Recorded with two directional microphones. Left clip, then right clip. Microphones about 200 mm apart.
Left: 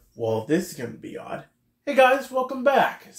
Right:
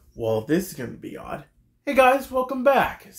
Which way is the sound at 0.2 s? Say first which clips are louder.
Right 1 dB; 25° right (ahead or behind).